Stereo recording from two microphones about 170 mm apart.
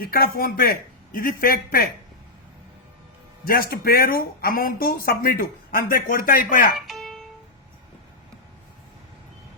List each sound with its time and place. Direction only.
0.0 s speech: 60° left (ahead or behind)
3.5 s speech: 60° left (ahead or behind)
6.7 s music: centre (ahead or behind)